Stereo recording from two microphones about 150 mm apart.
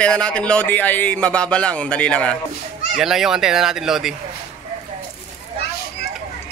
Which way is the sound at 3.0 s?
5° right (ahead or behind).